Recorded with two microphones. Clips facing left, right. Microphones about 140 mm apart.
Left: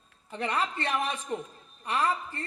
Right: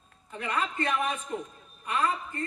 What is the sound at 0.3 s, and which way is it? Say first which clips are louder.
A woman's voice: left 1 dB; 35° left (ahead or behind).